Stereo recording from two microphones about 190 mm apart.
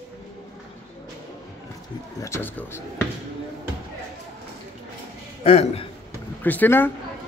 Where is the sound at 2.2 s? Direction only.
10° left (ahead or behind).